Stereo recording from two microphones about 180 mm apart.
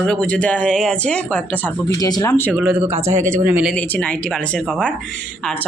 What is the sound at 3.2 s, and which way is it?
Speech, 15° right (ahead or behind).